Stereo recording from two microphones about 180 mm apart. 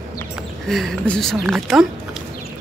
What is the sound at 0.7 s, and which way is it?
Speech, centre (ahead or behind).